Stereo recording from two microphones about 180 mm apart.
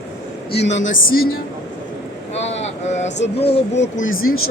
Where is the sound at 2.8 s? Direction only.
40° left (ahead or behind).